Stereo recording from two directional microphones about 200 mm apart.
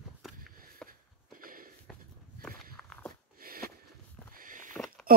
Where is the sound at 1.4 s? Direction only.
45° right (ahead or behind).